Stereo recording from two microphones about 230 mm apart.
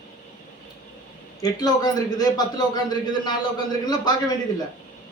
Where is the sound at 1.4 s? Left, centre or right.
Centre.